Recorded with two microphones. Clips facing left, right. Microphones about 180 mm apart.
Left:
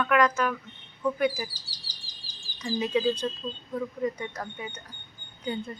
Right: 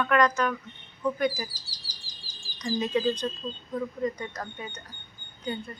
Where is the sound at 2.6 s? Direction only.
10° left (ahead or behind).